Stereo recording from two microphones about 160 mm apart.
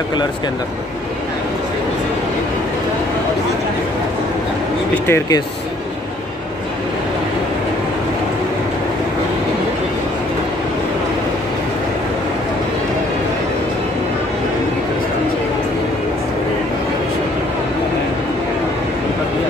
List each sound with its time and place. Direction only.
5.0 s speech: 15° left (ahead or behind)